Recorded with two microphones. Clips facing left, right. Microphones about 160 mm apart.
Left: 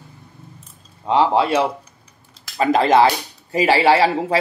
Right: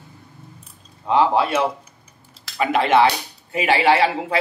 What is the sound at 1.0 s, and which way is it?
Speech, 30° left (ahead or behind).